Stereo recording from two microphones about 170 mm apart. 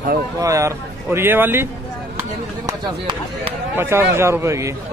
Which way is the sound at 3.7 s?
15° right (ahead or behind).